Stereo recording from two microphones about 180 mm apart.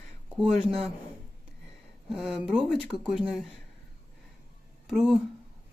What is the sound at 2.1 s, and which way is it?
Speech, 5° right (ahead or behind).